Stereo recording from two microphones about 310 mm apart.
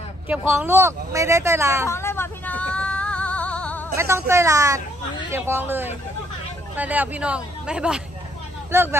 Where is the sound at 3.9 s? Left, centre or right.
Centre.